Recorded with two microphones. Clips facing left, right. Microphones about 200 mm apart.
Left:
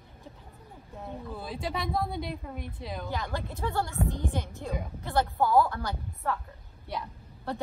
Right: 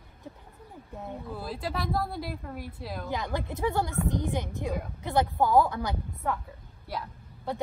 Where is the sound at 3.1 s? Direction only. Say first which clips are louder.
Right 5 dB; 20° right (ahead or behind).